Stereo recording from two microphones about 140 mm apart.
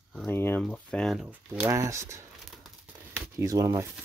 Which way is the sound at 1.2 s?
20° right (ahead or behind).